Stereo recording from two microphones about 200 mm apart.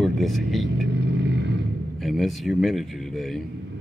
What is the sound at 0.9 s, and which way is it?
Vehicle, 60° right (ahead or behind).